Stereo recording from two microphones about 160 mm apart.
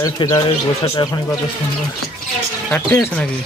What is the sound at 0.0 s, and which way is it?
Speech, 20° left (ahead or behind).